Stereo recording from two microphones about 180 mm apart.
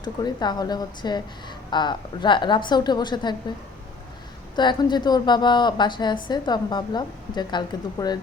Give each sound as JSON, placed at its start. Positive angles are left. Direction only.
{"t": 0.0, "sound": "a woman's voice", "side_deg": 20}
{"t": 4.5, "sound": "a woman's voice", "side_deg": 25}